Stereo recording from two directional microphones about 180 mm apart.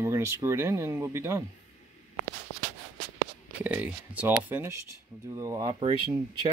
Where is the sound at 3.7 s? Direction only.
10° right (ahead or behind).